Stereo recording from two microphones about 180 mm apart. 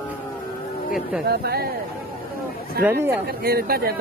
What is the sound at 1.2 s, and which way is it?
Speech, 60° right (ahead or behind).